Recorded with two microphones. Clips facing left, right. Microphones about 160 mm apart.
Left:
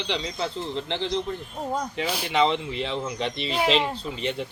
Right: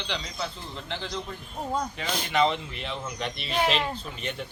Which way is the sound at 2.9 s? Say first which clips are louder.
Left 2 dB; 30° left (ahead or behind).